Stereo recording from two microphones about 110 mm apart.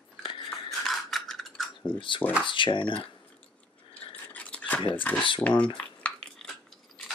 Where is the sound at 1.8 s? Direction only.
50° left (ahead or behind).